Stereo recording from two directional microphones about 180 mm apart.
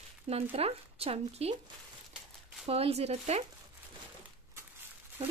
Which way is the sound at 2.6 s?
35° right (ahead or behind).